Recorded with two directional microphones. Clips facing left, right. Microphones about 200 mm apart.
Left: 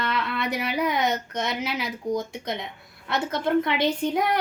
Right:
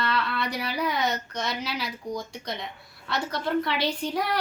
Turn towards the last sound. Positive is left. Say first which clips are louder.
# left 4 dB
turn(degrees=20)  # may be behind; listen again after turning